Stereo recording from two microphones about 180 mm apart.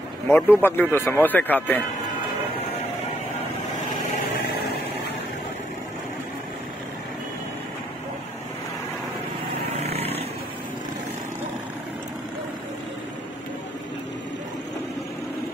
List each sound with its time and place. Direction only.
0.3 s speech: 10° left (ahead or behind)
9.8 s vehicle: 35° right (ahead or behind)